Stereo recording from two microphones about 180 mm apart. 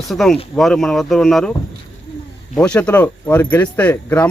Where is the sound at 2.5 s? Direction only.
5° left (ahead or behind).